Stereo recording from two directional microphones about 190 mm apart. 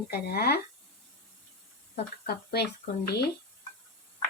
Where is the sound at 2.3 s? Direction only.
60° left (ahead or behind).